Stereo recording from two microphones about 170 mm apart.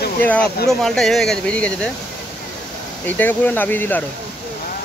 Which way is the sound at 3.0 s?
10° left (ahead or behind).